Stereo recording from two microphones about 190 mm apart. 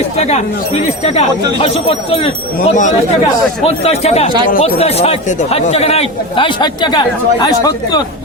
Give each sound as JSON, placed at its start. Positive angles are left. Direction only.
{"t": 0.2, "sound": "speech", "side_deg": 35}
{"t": 1.6, "sound": "speech", "side_deg": 30}